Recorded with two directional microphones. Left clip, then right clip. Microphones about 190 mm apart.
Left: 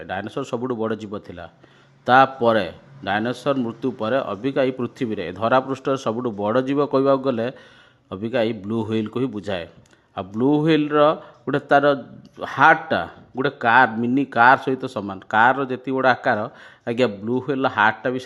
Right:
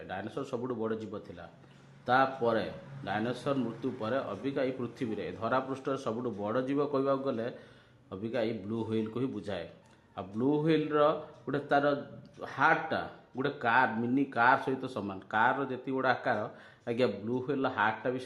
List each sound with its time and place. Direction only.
0.1 s speech: 35° left (ahead or behind)